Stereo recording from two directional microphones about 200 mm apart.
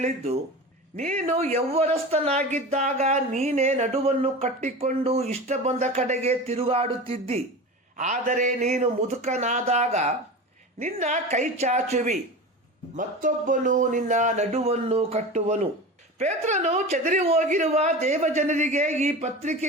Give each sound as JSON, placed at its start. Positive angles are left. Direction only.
{"t": 0.9, "sound": "speech", "side_deg": -40}